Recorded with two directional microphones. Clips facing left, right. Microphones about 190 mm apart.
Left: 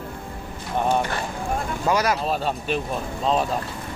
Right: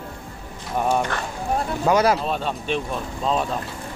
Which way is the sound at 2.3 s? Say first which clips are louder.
Even; 5° left (ahead or behind).